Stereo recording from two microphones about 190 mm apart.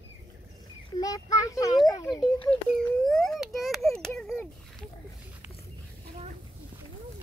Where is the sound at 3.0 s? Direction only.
5° left (ahead or behind).